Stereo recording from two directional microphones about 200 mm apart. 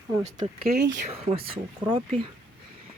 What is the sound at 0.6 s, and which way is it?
Speech, 55° right (ahead or behind).